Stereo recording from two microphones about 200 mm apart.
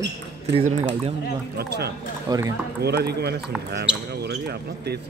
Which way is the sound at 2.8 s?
55° right (ahead or behind).